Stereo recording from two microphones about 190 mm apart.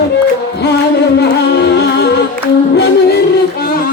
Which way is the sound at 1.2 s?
60° left (ahead or behind).